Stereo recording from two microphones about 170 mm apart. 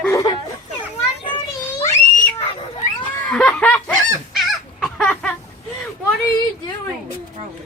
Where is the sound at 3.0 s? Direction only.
5° left (ahead or behind).